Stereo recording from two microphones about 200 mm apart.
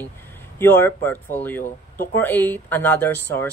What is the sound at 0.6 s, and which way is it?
Speech, 10° left (ahead or behind).